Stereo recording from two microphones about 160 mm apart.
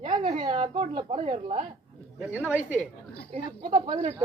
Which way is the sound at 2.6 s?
10° left (ahead or behind).